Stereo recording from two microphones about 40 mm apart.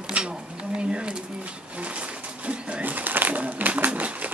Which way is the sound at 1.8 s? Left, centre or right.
Right.